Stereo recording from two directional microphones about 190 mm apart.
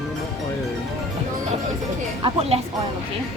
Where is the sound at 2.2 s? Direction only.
30° right (ahead or behind).